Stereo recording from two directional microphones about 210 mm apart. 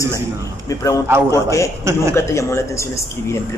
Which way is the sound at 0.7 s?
15° left (ahead or behind).